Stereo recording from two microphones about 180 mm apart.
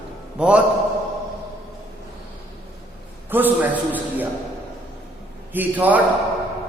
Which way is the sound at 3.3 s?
10° right (ahead or behind).